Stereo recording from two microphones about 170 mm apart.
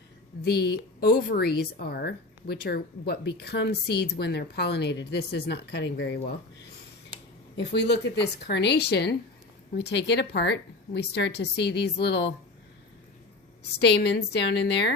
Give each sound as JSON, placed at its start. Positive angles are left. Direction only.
{"t": 0.4, "sound": "a woman's voice", "side_deg": 70}
{"t": 7.5, "sound": "a woman's voice", "side_deg": 90}
{"t": 13.7, "sound": "a woman's voice", "side_deg": 85}